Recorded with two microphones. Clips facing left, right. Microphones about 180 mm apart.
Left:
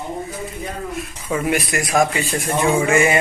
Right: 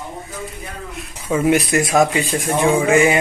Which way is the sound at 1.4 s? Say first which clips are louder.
Right 7 dB; 20° right (ahead or behind).